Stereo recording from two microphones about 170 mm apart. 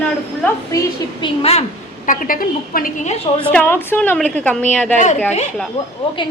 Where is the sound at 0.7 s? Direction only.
25° left (ahead or behind); by 3.1 s 50° left (ahead or behind).